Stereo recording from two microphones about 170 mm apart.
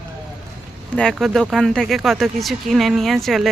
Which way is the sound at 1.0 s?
Centre (ahead or behind).